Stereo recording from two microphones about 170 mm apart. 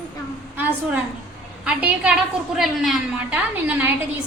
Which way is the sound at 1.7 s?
10° right (ahead or behind).